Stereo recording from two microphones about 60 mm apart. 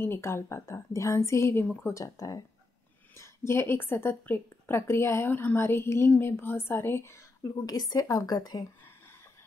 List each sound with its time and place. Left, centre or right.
0.0 s a woman's voice: left
3.2 s a woman's voice: left
5.3 s a woman's voice: left
7.6 s a woman's voice: left